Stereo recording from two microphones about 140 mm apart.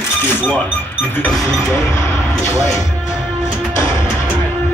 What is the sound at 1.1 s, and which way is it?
Music, 5° left (ahead or behind).